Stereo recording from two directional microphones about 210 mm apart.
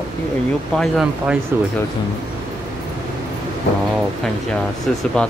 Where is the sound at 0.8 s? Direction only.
Centre (ahead or behind).